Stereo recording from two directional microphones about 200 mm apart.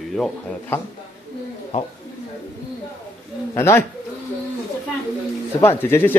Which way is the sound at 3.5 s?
15° left (ahead or behind).